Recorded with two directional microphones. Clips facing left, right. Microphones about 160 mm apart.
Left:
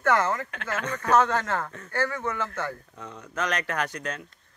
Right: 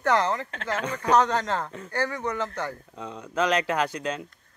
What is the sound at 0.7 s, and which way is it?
Speech, 15° right (ahead or behind).